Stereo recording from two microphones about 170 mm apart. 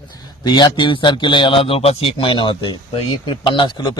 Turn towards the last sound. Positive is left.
turn(degrees=30)  # may be behind; listen again after turning